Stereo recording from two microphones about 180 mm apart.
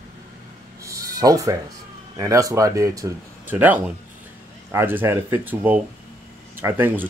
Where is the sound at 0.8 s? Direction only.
20° right (ahead or behind).